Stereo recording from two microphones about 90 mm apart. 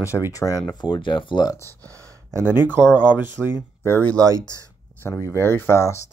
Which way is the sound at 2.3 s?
25° right (ahead or behind).